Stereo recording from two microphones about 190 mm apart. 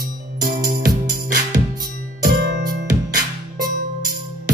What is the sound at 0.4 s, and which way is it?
Music, 45° right (ahead or behind).